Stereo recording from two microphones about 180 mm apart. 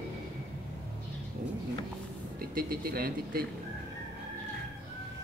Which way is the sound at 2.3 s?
55° right (ahead or behind).